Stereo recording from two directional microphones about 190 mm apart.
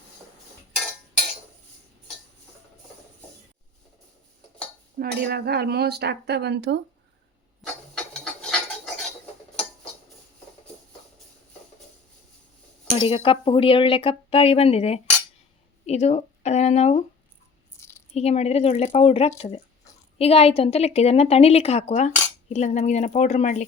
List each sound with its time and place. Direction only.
4.9 s speech: 55° right (ahead or behind)
7.6 s cutlery: 5° left (ahead or behind)
12.9 s a woman's voice: 25° left (ahead or behind)
17.7 s a sound: 15° left (ahead or behind)
18.1 s a woman's voice: 35° left (ahead or behind)